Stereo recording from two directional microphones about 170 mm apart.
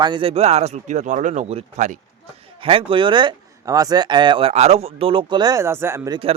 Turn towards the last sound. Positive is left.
turn(degrees=-15)  # may be behind; listen again after turning